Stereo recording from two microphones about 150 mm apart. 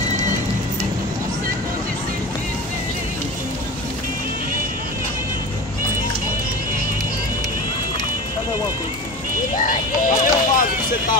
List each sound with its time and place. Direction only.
10.0 s music: 60° left (ahead or behind)